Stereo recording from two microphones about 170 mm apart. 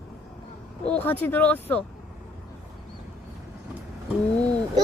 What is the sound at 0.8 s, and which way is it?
Speech, 10° left (ahead or behind).